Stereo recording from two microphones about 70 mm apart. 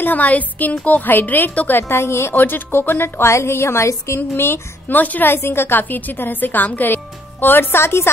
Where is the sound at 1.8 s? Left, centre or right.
Left.